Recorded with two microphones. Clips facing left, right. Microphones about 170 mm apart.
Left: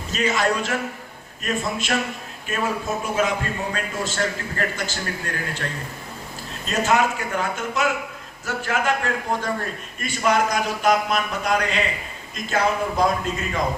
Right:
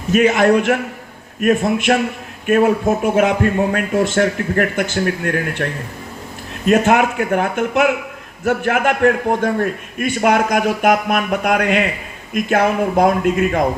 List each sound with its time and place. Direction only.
0.1 s a man's voice: 60° right (ahead or behind)